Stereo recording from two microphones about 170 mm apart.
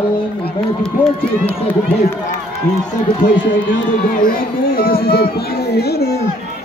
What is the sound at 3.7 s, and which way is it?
Speech, 55° left (ahead or behind).